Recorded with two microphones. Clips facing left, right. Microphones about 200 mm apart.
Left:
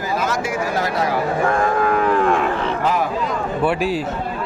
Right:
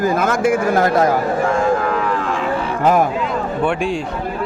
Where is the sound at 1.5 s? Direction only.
55° left (ahead or behind).